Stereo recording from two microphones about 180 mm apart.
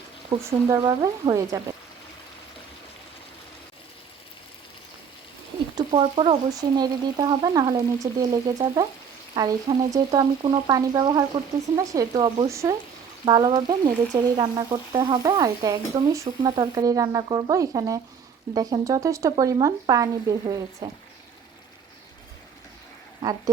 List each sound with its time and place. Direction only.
0.7 s speech: 20° right (ahead or behind)
5.7 s speech: 25° right (ahead or behind)